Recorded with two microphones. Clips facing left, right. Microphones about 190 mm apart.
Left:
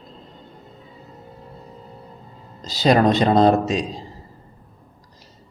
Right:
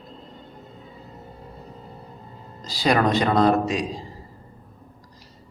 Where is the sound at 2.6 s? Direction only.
25° left (ahead or behind).